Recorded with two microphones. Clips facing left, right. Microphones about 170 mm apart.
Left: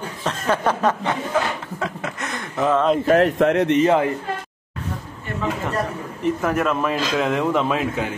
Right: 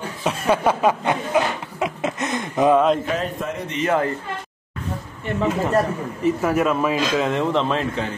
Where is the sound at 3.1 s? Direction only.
70° left (ahead or behind).